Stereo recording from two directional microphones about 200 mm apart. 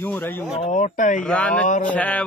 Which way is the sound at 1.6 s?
40° left (ahead or behind).